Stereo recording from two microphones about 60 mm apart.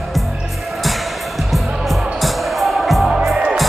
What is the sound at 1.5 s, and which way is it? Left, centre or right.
Music, centre.